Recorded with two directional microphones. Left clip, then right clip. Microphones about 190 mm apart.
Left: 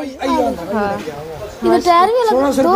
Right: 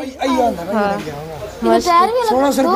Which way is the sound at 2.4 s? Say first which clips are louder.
Even; 15° right (ahead or behind).